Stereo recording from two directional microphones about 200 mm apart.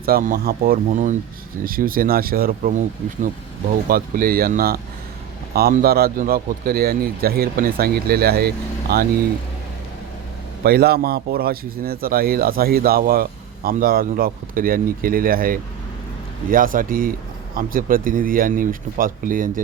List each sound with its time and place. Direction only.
0.0 s a man's voice: 45° right (ahead or behind)
3.8 s a man's voice: 45° right (ahead or behind)
10.6 s a man's voice: 50° right (ahead or behind)